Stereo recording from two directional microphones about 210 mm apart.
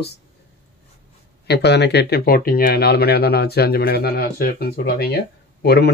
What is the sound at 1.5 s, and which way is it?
Speech, 55° left (ahead or behind).